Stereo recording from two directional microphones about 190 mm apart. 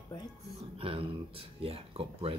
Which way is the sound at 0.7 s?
30° right (ahead or behind).